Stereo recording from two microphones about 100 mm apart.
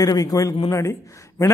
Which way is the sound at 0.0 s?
35° left (ahead or behind).